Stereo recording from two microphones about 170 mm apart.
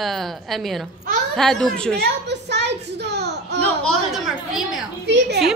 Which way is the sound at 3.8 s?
Centre (ahead or behind).